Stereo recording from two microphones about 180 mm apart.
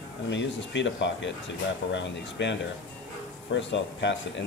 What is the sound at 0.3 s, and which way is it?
Speech, 85° left.